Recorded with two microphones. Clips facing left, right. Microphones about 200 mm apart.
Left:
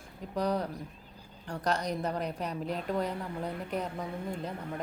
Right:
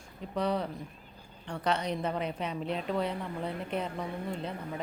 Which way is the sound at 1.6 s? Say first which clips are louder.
Right 1 dB; 40° left (ahead or behind).